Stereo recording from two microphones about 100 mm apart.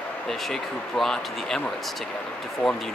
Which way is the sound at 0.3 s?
5° left (ahead or behind).